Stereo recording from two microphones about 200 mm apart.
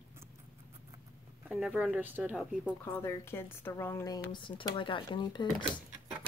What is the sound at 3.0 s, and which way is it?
Speech, 10° left (ahead or behind).